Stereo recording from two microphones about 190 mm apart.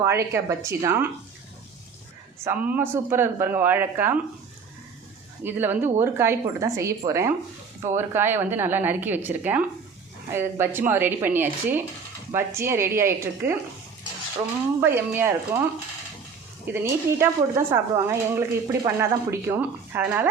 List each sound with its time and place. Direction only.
0.0 s speech: 15° right (ahead or behind)
2.4 s speech: 10° right (ahead or behind)
5.4 s speech: 10° right (ahead or behind)
14.8 s speech: 10° right (ahead or behind)
16.7 s speech: 10° right (ahead or behind)